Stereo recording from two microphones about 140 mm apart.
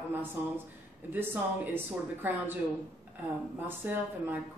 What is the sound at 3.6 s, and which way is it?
Speech, 15° right (ahead or behind).